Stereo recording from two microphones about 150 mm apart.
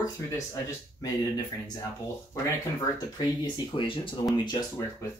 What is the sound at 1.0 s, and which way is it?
Speech, 25° left (ahead or behind).